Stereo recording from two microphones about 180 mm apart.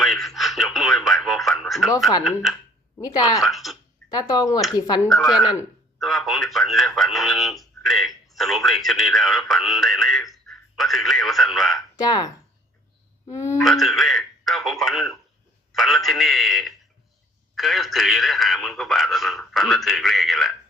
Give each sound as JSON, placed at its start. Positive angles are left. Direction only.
{"t": 0.0, "sound": "radio", "side_deg": 0}
{"t": 2.2, "sound": "a man's voice", "side_deg": 0}
{"t": 3.0, "sound": "speech", "side_deg": 20}
{"t": 3.4, "sound": "speech", "side_deg": 0}
{"t": 4.1, "sound": "speech", "side_deg": 20}
{"t": 5.1, "sound": "a man's voice", "side_deg": 0}
{"t": 11.9, "sound": "speech", "side_deg": 20}
{"t": 13.6, "sound": "a man's voice", "side_deg": 0}